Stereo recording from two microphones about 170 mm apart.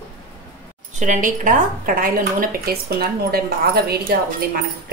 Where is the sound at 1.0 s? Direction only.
50° right (ahead or behind).